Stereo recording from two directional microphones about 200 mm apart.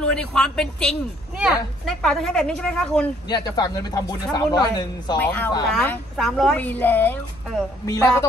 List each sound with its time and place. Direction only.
0.0 s speech: 5° left (ahead or behind)
3.3 s speech: 20° left (ahead or behind)
5.2 s speech: 10° left (ahead or behind)